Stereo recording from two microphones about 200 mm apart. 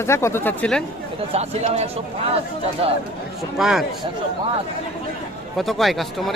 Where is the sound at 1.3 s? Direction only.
30° right (ahead or behind).